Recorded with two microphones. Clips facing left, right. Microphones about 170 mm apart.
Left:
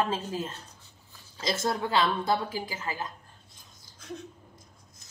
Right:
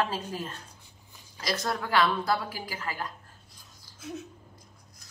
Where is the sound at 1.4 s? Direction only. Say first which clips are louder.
Left 2 dB; 25° left (ahead or behind).